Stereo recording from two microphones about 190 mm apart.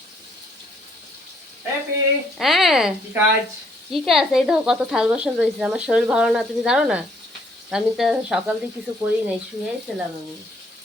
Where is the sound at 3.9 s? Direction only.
Centre (ahead or behind).